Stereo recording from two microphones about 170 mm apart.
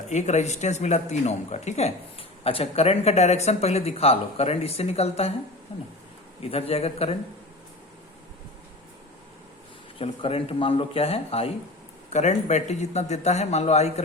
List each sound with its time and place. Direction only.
0.1 s speech: 45° left (ahead or behind)
6.4 s speech: 35° left (ahead or behind)
10.0 s speech: 35° left (ahead or behind)